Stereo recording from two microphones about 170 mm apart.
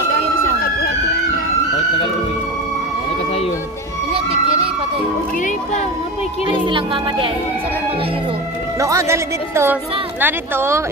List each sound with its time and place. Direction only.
4.3 s emergency vehicle: 35° right (ahead or behind)
6.6 s speech: 30° right (ahead or behind)
8.7 s a woman's voice: 20° right (ahead or behind)